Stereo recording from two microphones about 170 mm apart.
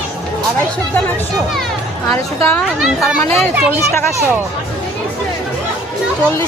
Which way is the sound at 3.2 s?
15° left (ahead or behind).